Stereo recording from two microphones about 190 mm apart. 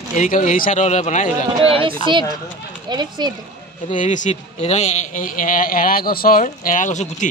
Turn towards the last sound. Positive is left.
turn(degrees=40)  # may be behind; listen again after turning